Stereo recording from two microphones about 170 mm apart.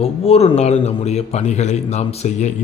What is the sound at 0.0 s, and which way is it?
Speech, 35° left (ahead or behind).